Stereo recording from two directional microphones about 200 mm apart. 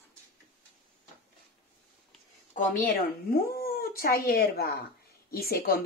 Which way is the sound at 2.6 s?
45° left (ahead or behind).